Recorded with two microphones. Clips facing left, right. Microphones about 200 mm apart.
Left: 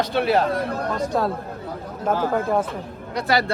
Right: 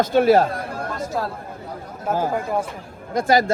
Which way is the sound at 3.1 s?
45° right (ahead or behind).